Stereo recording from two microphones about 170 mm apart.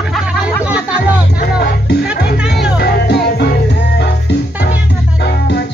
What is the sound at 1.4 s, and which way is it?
Music, 70° left (ahead or behind).